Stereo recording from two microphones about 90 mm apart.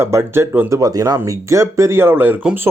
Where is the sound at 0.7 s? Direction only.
40° right (ahead or behind); by 2.4 s 25° right (ahead or behind).